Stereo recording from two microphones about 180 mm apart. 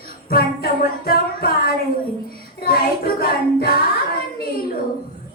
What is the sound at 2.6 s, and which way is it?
Music, 55° left (ahead or behind).